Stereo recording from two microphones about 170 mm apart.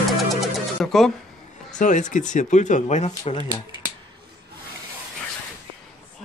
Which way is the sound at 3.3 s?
30° left (ahead or behind).